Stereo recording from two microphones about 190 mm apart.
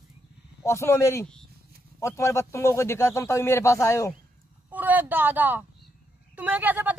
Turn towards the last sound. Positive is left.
turn(degrees=-10)  # may be behind; listen again after turning